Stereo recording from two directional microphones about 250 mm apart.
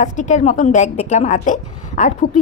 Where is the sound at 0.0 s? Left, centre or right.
Left.